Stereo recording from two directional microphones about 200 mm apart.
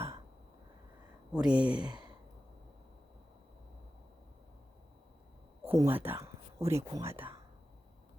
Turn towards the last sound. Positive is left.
turn(degrees=-10)  # may be behind; listen again after turning